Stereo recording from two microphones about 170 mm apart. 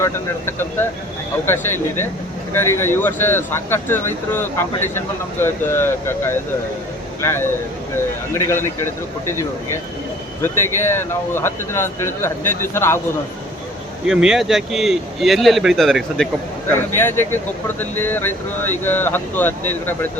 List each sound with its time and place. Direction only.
0.0 s speech: 15° left (ahead or behind)
14.1 s speech: 5° right (ahead or behind)
16.7 s speech: 15° left (ahead or behind)